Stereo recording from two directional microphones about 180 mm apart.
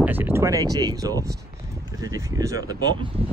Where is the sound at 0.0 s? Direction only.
10° right (ahead or behind).